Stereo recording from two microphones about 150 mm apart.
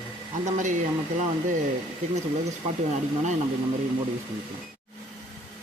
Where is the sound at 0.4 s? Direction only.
55° right (ahead or behind).